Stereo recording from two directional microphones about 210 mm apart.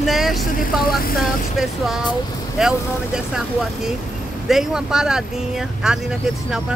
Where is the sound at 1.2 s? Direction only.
Centre (ahead or behind).